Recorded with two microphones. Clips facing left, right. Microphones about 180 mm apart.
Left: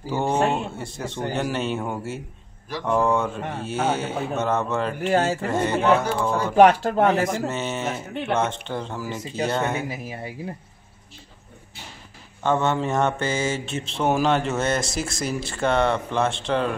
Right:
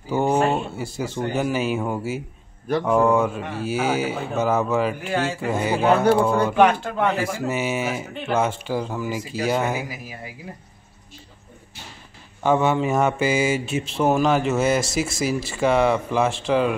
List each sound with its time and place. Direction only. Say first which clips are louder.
0.1 s speech: right 2 dB; 5° right (ahead or behind)
5.1 s speech: left 7 dB; 45° left (ahead or behind)
5.4 s mantra: even; 5° right (ahead or behind)
6.5 s speech: left 3 dB; 40° left (ahead or behind)
7.2 s mantra: right 1 dB; 10° right (ahead or behind)
9.5 s speech: right 3 dB; 5° right (ahead or behind)
9.8 s speech: left 4 dB; 30° left (ahead or behind)
12.4 s mantra: right 3 dB; 10° right (ahead or behind)
13.9 s speech: right 2 dB; centre (ahead or behind)